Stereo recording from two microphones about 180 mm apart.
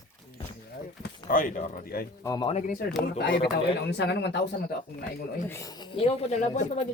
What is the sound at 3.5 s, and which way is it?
Speech, 70° left (ahead or behind).